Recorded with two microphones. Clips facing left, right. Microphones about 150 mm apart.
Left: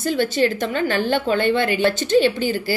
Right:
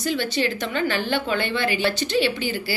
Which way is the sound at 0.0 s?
50° left (ahead or behind).